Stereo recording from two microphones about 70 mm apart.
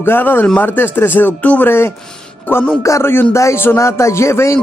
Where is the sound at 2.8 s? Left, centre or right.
Left.